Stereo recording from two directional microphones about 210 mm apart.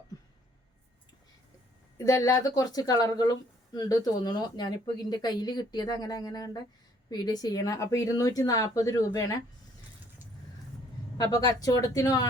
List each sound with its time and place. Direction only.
2.0 s a woman's voice: 15° left (ahead or behind)
11.2 s a woman's voice: 15° left (ahead or behind)